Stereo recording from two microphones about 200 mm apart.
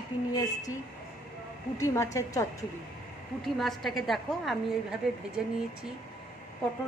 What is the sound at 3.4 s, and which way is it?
A woman's voice, centre (ahead or behind).